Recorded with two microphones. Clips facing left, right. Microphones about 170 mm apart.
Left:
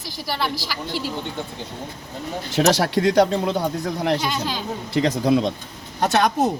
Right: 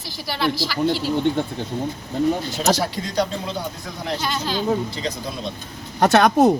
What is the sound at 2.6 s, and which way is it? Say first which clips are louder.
Speech: left 3 dB; 75° left (ahead or behind).